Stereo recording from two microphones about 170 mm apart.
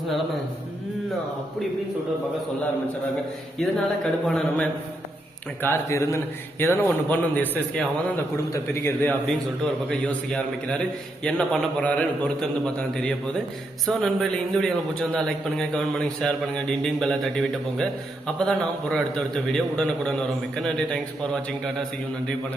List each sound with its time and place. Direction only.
3.6 s a man's voice: 5° left (ahead or behind)
5.6 s a man's voice: 15° left (ahead or behind)
8.5 s a man's voice: 15° left (ahead or behind)